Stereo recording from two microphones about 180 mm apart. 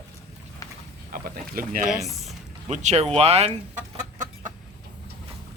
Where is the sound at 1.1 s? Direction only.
50° right (ahead or behind).